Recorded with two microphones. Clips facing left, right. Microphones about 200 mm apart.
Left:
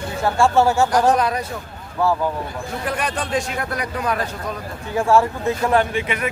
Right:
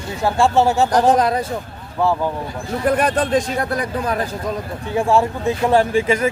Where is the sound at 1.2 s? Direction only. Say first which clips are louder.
Right 3 dB; 30° right (ahead or behind).